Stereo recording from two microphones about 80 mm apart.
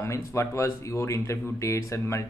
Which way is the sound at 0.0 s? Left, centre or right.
Left.